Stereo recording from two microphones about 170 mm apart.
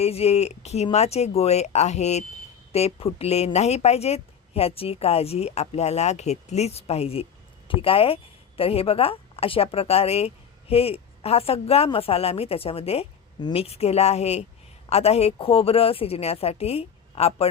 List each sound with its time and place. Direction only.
0.0 s a woman's voice: 35° left (ahead or behind)